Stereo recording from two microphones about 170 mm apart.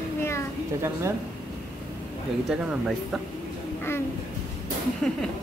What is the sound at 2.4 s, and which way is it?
Speech, 5° right (ahead or behind).